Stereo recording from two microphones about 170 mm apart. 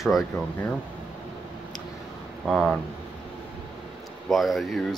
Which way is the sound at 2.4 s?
Centre (ahead or behind).